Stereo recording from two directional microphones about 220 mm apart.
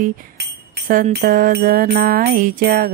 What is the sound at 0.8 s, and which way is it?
Music, 40° right (ahead or behind).